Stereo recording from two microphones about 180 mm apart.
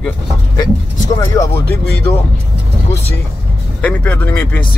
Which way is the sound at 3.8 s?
10° left (ahead or behind).